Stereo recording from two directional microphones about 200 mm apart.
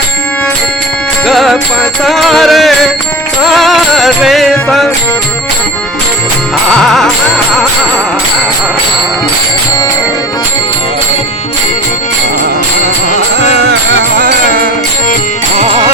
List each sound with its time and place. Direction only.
1.3 s music: centre (ahead or behind)
6.7 s music: centre (ahead or behind)
15.5 s music: 30° right (ahead or behind)